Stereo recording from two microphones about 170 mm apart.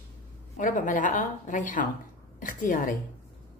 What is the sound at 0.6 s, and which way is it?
Speech, 50° left (ahead or behind).